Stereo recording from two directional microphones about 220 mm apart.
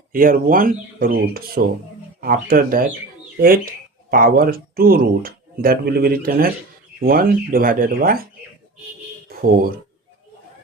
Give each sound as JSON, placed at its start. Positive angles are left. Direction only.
{"t": 0.1, "sound": "speech", "side_deg": -40}
{"t": 9.3, "sound": "speech", "side_deg": -40}